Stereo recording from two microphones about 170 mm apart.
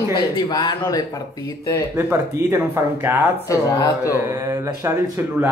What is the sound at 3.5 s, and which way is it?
Speech, 20° left (ahead or behind).